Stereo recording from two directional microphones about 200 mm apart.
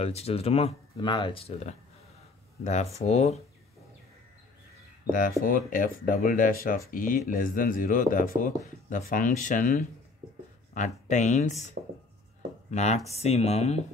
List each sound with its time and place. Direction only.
0.0 s speech: 30° left (ahead or behind)
5.4 s speech: 45° left (ahead or behind)
12.7 s speech: 35° left (ahead or behind)